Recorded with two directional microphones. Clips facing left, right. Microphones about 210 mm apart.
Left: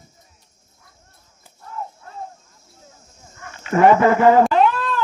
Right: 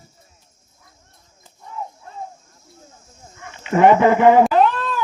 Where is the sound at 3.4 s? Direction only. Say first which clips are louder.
Right 1 dB; 20° right (ahead or behind).